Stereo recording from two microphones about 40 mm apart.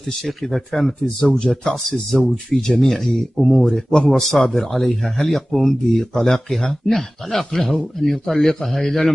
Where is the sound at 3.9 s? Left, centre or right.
Centre.